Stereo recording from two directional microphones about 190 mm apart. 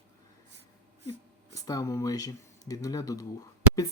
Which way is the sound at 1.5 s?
20° left (ahead or behind).